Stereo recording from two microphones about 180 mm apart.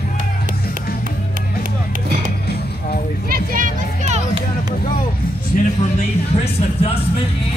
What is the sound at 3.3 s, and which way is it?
Music, 50° right (ahead or behind).